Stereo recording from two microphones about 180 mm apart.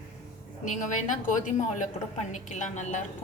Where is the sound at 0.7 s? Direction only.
45° left (ahead or behind).